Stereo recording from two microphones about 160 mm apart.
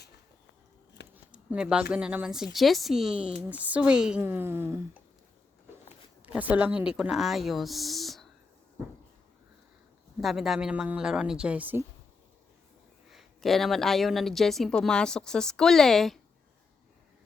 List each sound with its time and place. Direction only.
1.1 s speech: 10° right (ahead or behind)
6.2 s speech: 10° right (ahead or behind)
10.2 s speech: centre (ahead or behind)
13.1 s speech: centre (ahead or behind)